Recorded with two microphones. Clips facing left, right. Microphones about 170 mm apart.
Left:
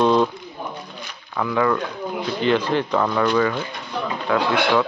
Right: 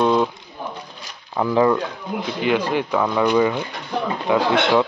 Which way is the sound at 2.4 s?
10° right (ahead or behind).